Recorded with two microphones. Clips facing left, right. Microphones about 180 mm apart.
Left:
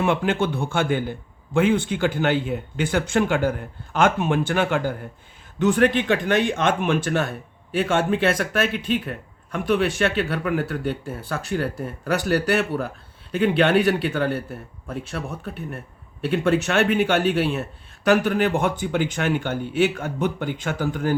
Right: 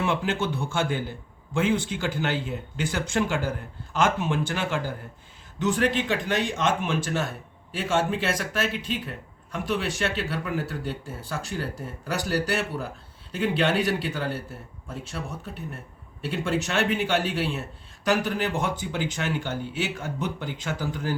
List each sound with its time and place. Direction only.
0.0 s speech: 55° left (ahead or behind)